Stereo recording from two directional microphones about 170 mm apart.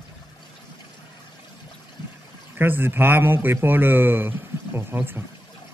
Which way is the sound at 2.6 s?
15° right (ahead or behind).